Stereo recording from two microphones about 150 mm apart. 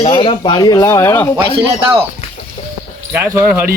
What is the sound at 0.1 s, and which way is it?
Speech, 35° left (ahead or behind).